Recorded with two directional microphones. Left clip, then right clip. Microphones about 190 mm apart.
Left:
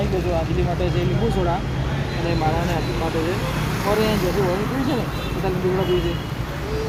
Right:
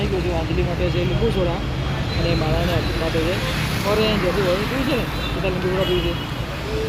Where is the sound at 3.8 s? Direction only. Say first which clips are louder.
Even; 45° left (ahead or behind).